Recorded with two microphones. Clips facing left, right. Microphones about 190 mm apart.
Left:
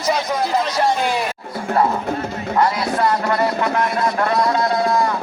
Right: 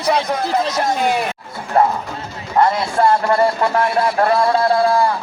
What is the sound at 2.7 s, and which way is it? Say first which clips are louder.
Speech: right 3 dB; 25° right (ahead or behind).